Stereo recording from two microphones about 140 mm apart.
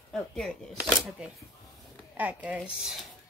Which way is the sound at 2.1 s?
10° right (ahead or behind).